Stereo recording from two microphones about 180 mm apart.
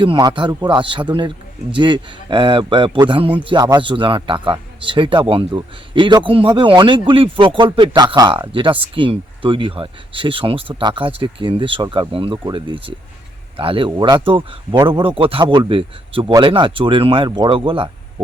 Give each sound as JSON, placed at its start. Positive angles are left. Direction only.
{"t": 0.0, "sound": "a man's voice", "side_deg": -25}